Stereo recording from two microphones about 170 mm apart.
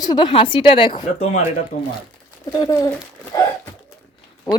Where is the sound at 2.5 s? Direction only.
20° left (ahead or behind).